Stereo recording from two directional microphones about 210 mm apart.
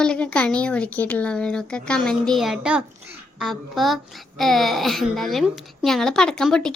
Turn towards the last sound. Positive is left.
turn(degrees=5)  # may be behind; listen again after turning